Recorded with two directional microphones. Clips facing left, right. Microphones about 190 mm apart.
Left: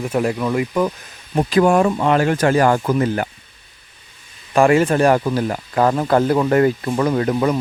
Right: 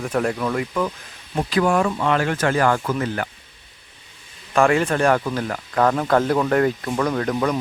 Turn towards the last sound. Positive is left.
turn(degrees=5)  # may be behind; listen again after turning